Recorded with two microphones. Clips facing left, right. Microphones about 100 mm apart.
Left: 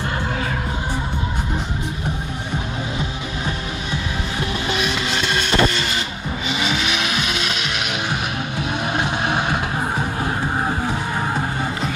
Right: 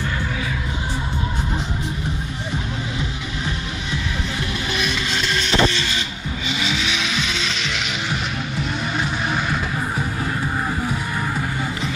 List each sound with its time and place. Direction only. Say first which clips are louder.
4.9 s music: left 2 dB; 45° left (ahead or behind)
6.6 s vehicle: left 2 dB; 45° left (ahead or behind)
8.5 s vehicle: left 2 dB; 55° left (ahead or behind)
9.0 s music: left 2 dB; 20° left (ahead or behind)